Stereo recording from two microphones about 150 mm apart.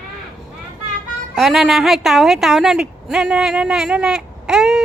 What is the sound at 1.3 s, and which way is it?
A woman's voice, centre (ahead or behind).